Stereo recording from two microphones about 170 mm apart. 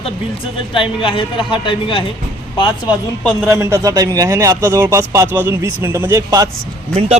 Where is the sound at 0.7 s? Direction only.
30° left (ahead or behind).